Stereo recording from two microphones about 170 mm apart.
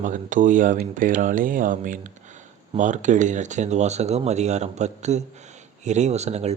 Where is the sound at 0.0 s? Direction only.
50° right (ahead or behind).